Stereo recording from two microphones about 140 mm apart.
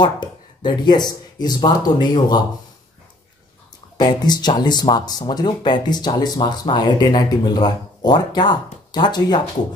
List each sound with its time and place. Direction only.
0.0 s speech: 30° left (ahead or behind)
4.0 s speech: 30° left (ahead or behind)